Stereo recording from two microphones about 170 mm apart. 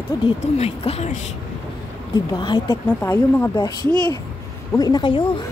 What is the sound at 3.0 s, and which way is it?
Speech, 10° left (ahead or behind).